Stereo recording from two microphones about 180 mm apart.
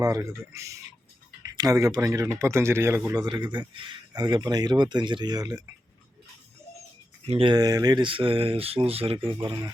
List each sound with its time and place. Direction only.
0.0 s a man's voice: 15° right (ahead or behind)
7.3 s a man's voice: 30° right (ahead or behind)
9.4 s a man's voice: 20° right (ahead or behind)